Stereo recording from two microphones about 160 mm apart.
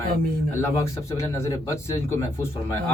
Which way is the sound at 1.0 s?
20° left (ahead or behind).